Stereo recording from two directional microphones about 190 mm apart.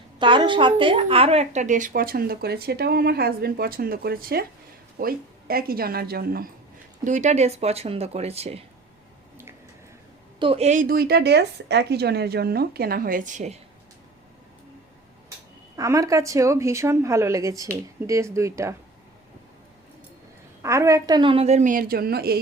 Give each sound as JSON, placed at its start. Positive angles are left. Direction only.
{"t": 0.2, "sound": "a woman's voice", "side_deg": -25}
{"t": 7.0, "sound": "a woman's voice", "side_deg": -40}
{"t": 10.4, "sound": "a woman's voice", "side_deg": -30}
{"t": 15.7, "sound": "speech", "side_deg": -15}
{"t": 20.6, "sound": "a woman's voice", "side_deg": -15}